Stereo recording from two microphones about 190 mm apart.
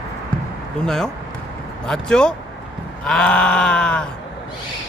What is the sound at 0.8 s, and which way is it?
Sheep, 5° left (ahead or behind).